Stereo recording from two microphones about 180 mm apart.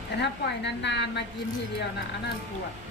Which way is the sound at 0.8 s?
75° left (ahead or behind).